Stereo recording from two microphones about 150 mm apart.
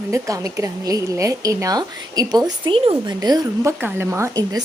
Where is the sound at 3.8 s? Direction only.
15° right (ahead or behind).